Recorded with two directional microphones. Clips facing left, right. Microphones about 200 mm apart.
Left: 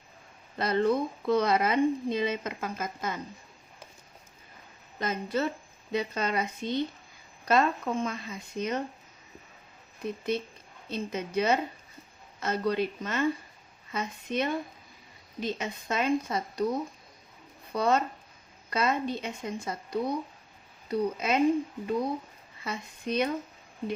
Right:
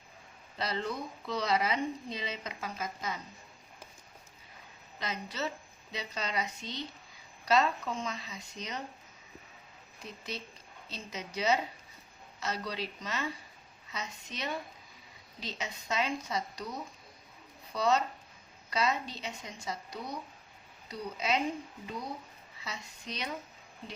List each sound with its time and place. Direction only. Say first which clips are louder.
0.5 s speech: left 10 dB; 55° left (ahead or behind)
4.9 s speech: left 8 dB; 50° left (ahead or behind)
10.0 s speech: left 11 dB; 55° left (ahead or behind)
17.7 s speech: left 3 dB; 55° left (ahead or behind)
22.6 s speech: left 9 dB; 55° left (ahead or behind)